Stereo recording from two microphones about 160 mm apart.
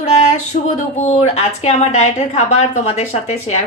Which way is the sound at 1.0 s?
45° left (ahead or behind).